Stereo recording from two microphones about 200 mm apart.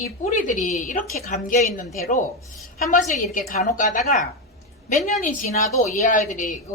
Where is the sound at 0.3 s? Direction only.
40° left (ahead or behind).